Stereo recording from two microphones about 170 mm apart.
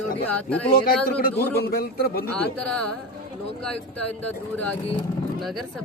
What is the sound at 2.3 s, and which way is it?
Speech, 5° left (ahead or behind).